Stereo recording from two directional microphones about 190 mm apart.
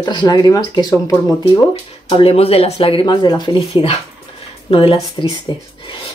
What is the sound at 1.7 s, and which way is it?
Speech, 30° left (ahead or behind).